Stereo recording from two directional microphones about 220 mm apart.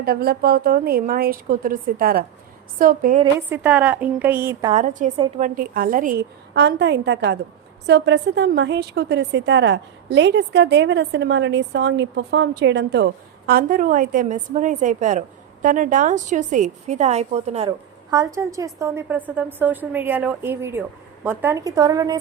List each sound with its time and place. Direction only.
0.0 s a woman's voice: 45° right (ahead or behind)
3.5 s a woman's voice: 5° right (ahead or behind)
4.7 s a woman's voice: 35° right (ahead or behind)
5.5 s a woman's voice: 40° right (ahead or behind)
6.5 s a woman's voice: 50° right (ahead or behind)
13.5 s a woman's voice: 40° right (ahead or behind); by 22.2 s 15° right (ahead or behind)